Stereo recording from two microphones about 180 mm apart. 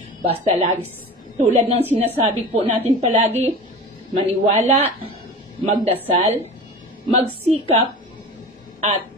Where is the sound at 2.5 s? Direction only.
30° right (ahead or behind).